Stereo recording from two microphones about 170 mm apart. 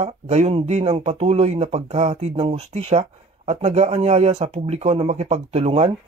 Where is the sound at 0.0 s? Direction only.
40° right (ahead or behind).